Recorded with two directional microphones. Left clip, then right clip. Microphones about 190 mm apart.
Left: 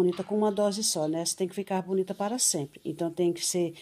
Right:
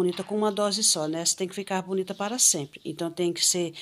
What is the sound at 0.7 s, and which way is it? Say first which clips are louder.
Speech: right 4 dB; 20° right (ahead or behind).